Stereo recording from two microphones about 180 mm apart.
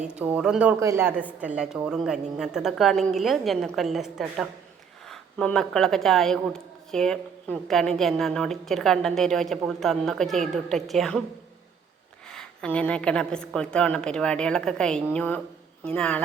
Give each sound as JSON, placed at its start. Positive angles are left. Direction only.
{"t": 0.0, "sound": "a woman's voice", "side_deg": -5}
{"t": 12.3, "sound": "speech", "side_deg": 5}